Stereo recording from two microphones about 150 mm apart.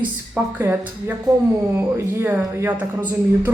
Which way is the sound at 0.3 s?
15° right (ahead or behind).